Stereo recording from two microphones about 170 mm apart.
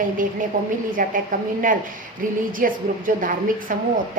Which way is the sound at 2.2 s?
55° right (ahead or behind).